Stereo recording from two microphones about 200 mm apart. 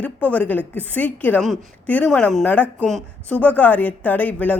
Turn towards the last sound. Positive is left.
turn(degrees=5)  # may be behind; listen again after turning